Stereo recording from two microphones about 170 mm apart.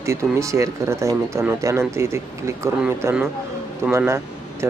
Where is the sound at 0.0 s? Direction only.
15° right (ahead or behind).